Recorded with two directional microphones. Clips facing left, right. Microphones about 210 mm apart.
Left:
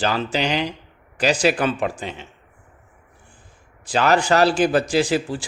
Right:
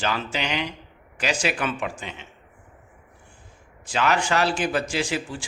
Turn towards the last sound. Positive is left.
turn(degrees=35)  # may be behind; listen again after turning